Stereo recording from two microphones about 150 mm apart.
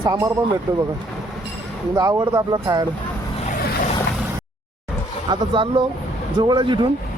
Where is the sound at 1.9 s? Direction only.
30° right (ahead or behind).